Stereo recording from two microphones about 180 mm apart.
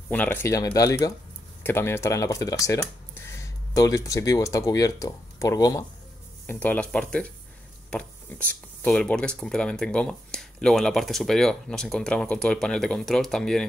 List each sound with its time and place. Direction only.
0.1 s speech: 10° left (ahead or behind)